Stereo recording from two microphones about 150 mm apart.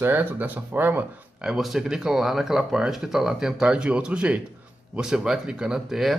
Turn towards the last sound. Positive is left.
turn(degrees=-5)  # may be behind; listen again after turning